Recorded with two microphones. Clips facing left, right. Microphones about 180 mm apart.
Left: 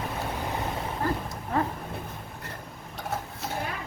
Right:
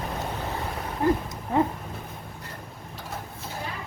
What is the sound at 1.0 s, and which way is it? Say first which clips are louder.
Dog: right 7 dB; 20° right (ahead or behind).